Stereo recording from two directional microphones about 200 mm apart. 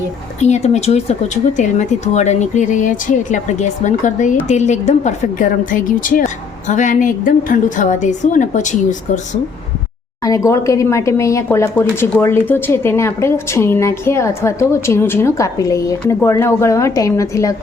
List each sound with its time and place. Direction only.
0.4 s a woman's voice: 35° left (ahead or behind)
10.2 s speech: 15° left (ahead or behind)